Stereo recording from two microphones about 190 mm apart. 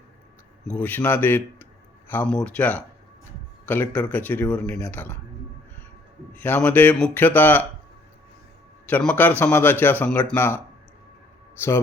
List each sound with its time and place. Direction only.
0.7 s speech: 10° left (ahead or behind)
6.3 s speech: 10° left (ahead or behind)
8.9 s speech: 5° left (ahead or behind)